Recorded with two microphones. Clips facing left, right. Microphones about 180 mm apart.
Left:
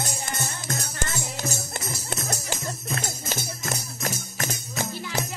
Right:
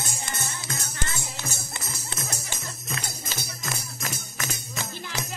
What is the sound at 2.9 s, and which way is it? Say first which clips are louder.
Music: left 5 dB; 45° left (ahead or behind).